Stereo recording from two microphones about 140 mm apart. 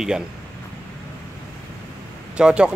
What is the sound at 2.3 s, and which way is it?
Speech, 5° right (ahead or behind).